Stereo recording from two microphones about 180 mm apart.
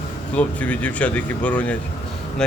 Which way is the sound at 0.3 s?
10° left (ahead or behind).